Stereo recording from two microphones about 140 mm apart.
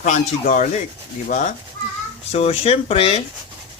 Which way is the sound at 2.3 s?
45° left (ahead or behind).